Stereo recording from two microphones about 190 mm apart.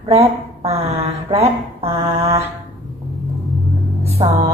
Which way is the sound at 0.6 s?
30° right (ahead or behind).